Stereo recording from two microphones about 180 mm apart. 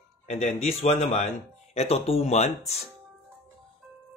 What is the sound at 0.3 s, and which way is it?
Speech, 35° left (ahead or behind).